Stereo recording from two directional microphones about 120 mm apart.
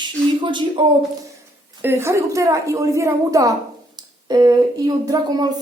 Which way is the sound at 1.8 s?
20° right (ahead or behind).